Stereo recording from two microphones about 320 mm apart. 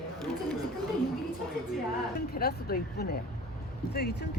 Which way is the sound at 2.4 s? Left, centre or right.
Left.